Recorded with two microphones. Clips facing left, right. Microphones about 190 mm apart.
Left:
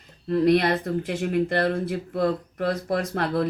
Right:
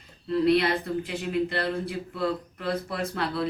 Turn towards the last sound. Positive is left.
turn(degrees=50)  # may be behind; listen again after turning